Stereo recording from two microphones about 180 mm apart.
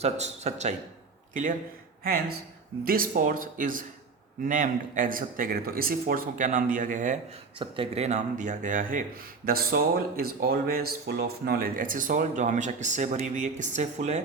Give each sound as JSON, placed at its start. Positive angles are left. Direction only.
{"t": 0.0, "sound": "speech", "side_deg": -40}
{"t": 2.0, "sound": "speech", "side_deg": -55}
{"t": 7.6, "sound": "speech", "side_deg": -35}